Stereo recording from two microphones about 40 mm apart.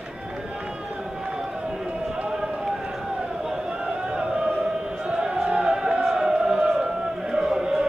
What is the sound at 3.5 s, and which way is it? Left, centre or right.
Chant, centre.